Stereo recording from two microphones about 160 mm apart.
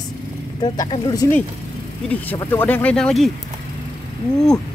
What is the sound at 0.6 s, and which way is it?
Speech, 25° left (ahead or behind).